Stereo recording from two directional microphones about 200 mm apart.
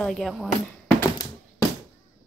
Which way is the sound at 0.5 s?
20° left (ahead or behind).